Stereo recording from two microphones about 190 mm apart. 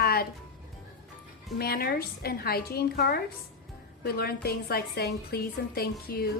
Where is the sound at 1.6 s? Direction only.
55° left (ahead or behind).